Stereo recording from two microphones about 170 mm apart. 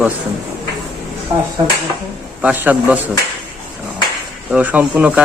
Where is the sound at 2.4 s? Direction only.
10° right (ahead or behind).